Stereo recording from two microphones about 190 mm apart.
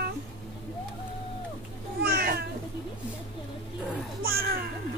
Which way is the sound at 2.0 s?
55° right (ahead or behind).